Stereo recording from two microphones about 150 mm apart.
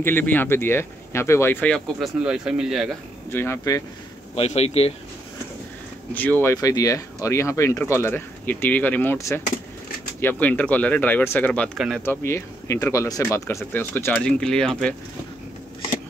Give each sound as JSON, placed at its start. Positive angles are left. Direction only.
{"t": 0.0, "sound": "speech", "side_deg": 10}
{"t": 2.0, "sound": "speech", "side_deg": -5}
{"t": 3.3, "sound": "speech", "side_deg": 15}
{"t": 4.4, "sound": "speech", "side_deg": 45}
{"t": 6.1, "sound": "speech", "side_deg": 10}